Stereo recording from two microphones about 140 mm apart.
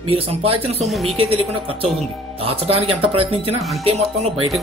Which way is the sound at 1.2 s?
45° right (ahead or behind).